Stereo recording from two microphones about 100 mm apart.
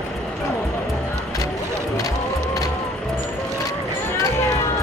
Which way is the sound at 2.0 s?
35° left (ahead or behind).